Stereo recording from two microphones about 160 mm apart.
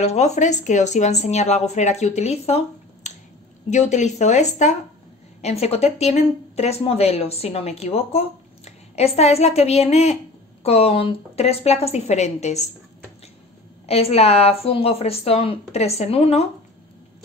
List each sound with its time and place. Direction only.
0.0 s speech: 45° left (ahead or behind)
13.8 s speech: 40° left (ahead or behind)